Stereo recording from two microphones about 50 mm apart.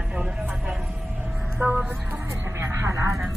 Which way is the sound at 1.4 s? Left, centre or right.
Right.